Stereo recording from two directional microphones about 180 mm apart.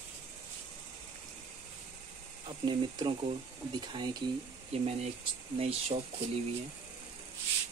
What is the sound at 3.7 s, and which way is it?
Speech, 25° right (ahead or behind).